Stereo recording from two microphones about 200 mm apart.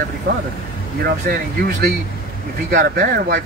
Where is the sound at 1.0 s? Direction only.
50° right (ahead or behind).